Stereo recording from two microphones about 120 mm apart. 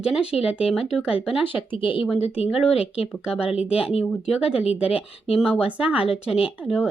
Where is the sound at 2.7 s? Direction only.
55° left (ahead or behind).